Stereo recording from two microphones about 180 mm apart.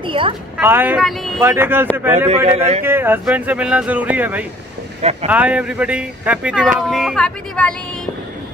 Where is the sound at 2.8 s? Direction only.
10° right (ahead or behind); by 8.1 s 5° left (ahead or behind).